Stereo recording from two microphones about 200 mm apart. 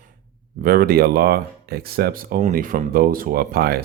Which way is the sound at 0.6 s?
50° right (ahead or behind).